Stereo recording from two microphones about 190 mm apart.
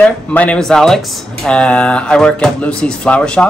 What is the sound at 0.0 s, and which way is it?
Speech, 5° left (ahead or behind).